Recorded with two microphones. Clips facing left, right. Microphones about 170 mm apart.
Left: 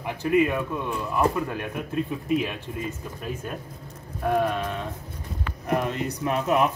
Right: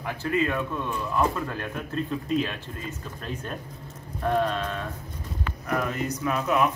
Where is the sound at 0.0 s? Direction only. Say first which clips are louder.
Left 4 dB; 15° left (ahead or behind).